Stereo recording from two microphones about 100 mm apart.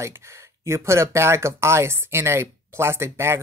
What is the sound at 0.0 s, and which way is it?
Speech, 30° right (ahead or behind).